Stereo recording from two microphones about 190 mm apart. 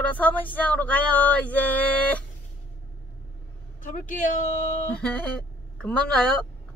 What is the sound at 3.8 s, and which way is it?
Speech, 45° left (ahead or behind).